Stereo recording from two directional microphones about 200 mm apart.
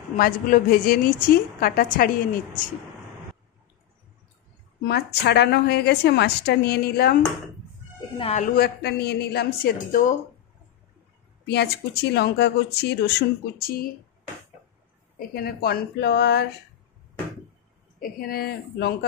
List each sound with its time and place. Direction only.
0.2 s a woman's voice: 45° left (ahead or behind)
4.8 s a woman's voice: 55° left (ahead or behind)
8.2 s speech: 30° left (ahead or behind)
8.5 s a woman's voice: 55° left (ahead or behind)
11.4 s a woman's voice: 55° left (ahead or behind)
15.1 s a woman's voice: 50° left (ahead or behind)
18.0 s a woman's voice: 50° left (ahead or behind)